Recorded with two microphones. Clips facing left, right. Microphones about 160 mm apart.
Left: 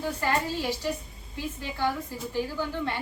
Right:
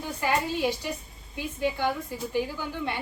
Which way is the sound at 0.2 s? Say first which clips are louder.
Right 5 dB; 15° right (ahead or behind).